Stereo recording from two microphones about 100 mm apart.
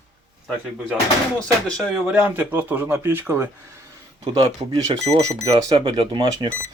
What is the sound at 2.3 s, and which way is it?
Speech, 20° right (ahead or behind).